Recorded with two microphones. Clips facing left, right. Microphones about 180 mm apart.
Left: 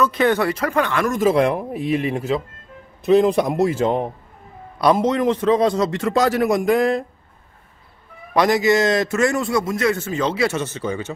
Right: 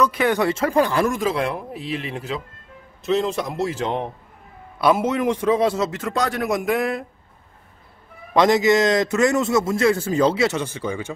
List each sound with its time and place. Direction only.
0.0 s speech: 10° right (ahead or behind)
0.5 s speech: 30° right (ahead or behind)
1.2 s speech: 45° left (ahead or behind)
3.0 s a man's voice: 55° left (ahead or behind)
4.7 s a man's voice: 5° right (ahead or behind)
8.3 s a man's voice: 20° right (ahead or behind)
10.6 s speech: 10° right (ahead or behind)